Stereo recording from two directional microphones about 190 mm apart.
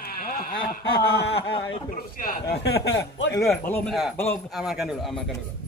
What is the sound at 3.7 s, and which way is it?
Speech, 5° left (ahead or behind).